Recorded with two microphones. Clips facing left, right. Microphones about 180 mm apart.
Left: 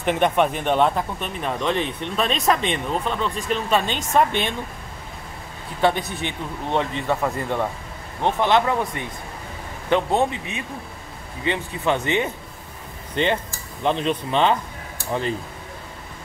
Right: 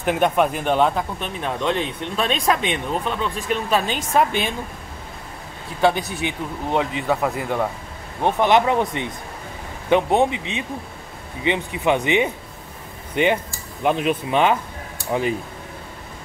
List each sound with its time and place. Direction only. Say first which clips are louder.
0.0 s speech: right 1 dB; 5° right (ahead or behind)
5.8 s speech: right 2 dB; centre (ahead or behind)